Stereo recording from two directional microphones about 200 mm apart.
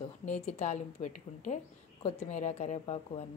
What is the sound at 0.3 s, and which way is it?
A woman's voice, 35° left (ahead or behind).